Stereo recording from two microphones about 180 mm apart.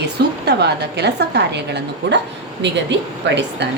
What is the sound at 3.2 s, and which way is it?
Speech, 75° right (ahead or behind).